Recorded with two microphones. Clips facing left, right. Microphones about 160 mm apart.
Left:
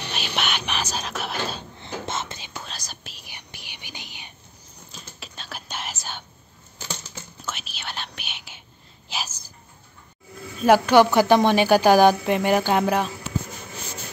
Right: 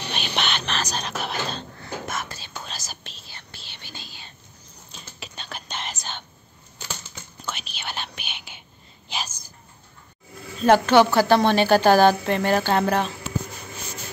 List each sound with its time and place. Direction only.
0.1 s music: 5° left (ahead or behind)
1.8 s whispering: 25° left (ahead or behind)
2.5 s whispering: centre (ahead or behind)
3.0 s whispering: 10° left (ahead or behind)
4.9 s whispering: centre (ahead or behind)
7.4 s whispering: centre (ahead or behind)
9.1 s a sound: 5° left (ahead or behind)
10.6 s a woman's voice: 10° left (ahead or behind)